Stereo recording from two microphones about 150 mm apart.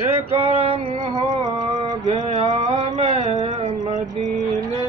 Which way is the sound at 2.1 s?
50° right (ahead or behind).